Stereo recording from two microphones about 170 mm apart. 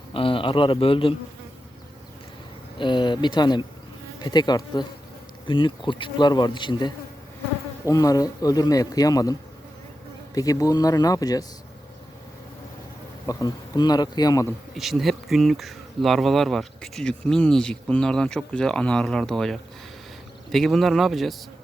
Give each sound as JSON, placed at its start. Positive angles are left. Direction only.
{"t": 0.1, "sound": "a man's voice", "side_deg": 30}
{"t": 2.7, "sound": "speech", "side_deg": 25}
{"t": 13.2, "sound": "speech", "side_deg": 20}
{"t": 14.8, "sound": "speech", "side_deg": 0}